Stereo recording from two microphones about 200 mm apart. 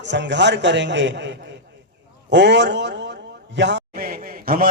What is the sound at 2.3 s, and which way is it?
A man's voice, 60° right (ahead or behind).